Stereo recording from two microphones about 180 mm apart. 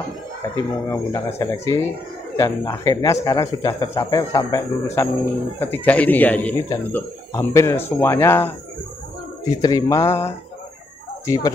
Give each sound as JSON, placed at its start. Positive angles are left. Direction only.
{"t": 0.8, "sound": "speech", "side_deg": 15}
{"t": 9.6, "sound": "speech", "side_deg": 20}